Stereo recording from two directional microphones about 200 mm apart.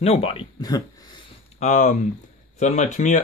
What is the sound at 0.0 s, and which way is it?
Speech, 30° left (ahead or behind).